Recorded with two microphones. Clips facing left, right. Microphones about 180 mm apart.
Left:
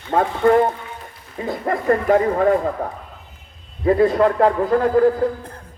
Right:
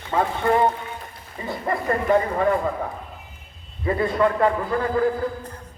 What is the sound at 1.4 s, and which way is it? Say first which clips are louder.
Speech: left 4 dB; 55° left (ahead or behind).